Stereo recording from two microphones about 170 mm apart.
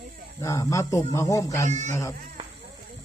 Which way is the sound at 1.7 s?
45° right (ahead or behind).